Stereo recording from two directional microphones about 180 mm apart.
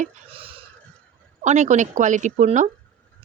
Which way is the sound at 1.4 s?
40° right (ahead or behind).